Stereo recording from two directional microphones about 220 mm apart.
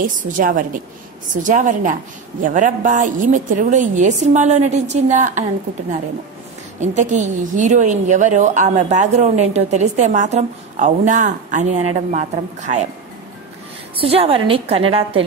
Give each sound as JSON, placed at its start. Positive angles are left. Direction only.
{"t": 0.4, "sound": "a woman's voice", "side_deg": -40}
{"t": 7.0, "sound": "a woman's voice", "side_deg": -35}
{"t": 13.9, "sound": "a woman's voice", "side_deg": -25}